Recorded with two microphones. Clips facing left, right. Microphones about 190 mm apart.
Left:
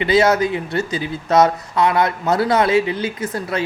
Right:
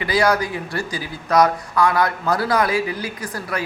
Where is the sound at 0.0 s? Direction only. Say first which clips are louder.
Left 4 dB; 25° left (ahead or behind).